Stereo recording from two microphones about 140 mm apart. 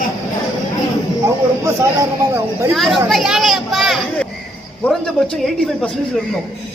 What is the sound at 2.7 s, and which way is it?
A man's voice, centre (ahead or behind).